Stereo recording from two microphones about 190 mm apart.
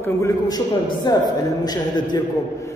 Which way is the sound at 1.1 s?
20° left (ahead or behind).